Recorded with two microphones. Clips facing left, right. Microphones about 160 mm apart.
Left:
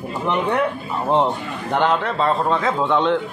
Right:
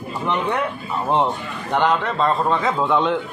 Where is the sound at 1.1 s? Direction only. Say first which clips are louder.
Left 2 dB; centre (ahead or behind).